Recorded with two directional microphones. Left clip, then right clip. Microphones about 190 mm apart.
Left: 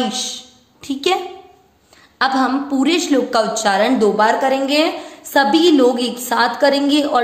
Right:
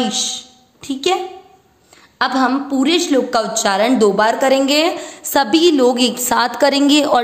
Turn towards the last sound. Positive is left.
turn(degrees=-45)  # may be behind; listen again after turning